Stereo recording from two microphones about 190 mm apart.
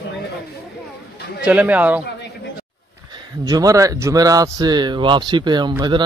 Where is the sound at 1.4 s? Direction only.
10° right (ahead or behind).